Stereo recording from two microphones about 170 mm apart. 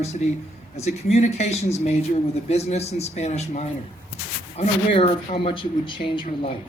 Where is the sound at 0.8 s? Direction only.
40° left (ahead or behind).